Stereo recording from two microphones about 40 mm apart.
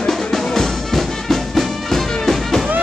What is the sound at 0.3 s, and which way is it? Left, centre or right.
Music, centre.